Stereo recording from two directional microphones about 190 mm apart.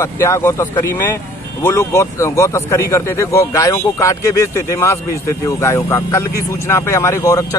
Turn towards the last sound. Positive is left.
turn(degrees=15)  # may be behind; listen again after turning